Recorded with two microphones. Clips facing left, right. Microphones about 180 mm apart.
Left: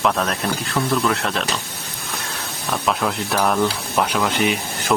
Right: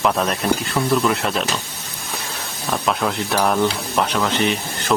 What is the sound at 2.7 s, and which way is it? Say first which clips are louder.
Speech: right 1 dB; centre (ahead or behind).